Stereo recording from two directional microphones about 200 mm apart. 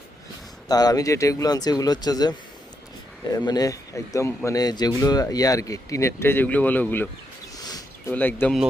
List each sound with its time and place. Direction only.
0.7 s speech: 20° left (ahead or behind)
3.3 s speech: 20° left (ahead or behind)
7.6 s a sound: 20° left (ahead or behind)
8.1 s speech: 10° left (ahead or behind)